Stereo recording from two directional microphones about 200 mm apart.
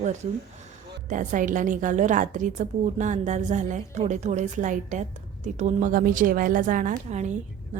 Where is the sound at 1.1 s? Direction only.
40° right (ahead or behind).